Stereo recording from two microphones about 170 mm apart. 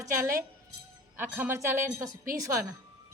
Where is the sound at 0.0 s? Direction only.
20° right (ahead or behind).